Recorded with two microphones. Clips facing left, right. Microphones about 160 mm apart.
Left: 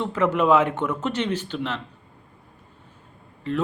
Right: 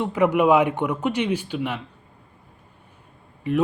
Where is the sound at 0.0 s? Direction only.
15° right (ahead or behind).